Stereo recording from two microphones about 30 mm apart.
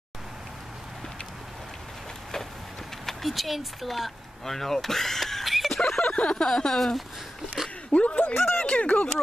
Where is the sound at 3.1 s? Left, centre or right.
Centre.